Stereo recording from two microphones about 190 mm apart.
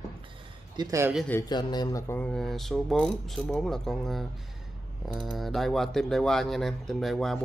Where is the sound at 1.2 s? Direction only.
10° left (ahead or behind).